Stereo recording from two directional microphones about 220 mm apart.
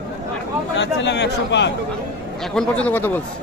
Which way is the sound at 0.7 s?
50° left (ahead or behind).